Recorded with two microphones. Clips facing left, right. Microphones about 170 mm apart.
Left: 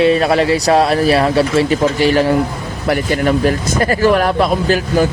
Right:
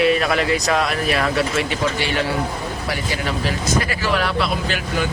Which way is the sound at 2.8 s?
55° left (ahead or behind).